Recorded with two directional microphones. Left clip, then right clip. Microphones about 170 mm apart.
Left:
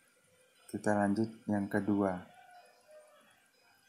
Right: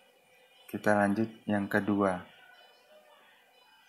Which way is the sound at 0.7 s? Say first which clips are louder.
Right 5 dB; 30° right (ahead or behind).